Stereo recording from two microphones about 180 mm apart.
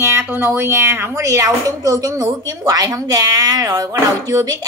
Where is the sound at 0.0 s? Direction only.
15° right (ahead or behind).